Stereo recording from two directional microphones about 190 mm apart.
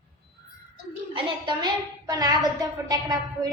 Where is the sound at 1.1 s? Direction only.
25° right (ahead or behind).